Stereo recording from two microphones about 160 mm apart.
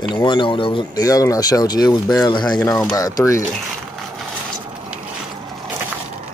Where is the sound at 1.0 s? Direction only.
20° left (ahead or behind).